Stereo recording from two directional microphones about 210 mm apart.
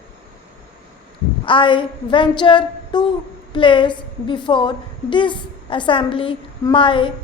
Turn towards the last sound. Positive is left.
turn(degrees=25)  # may be behind; listen again after turning